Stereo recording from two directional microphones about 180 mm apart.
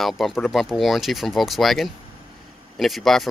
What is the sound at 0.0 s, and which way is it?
Speech, centre (ahead or behind).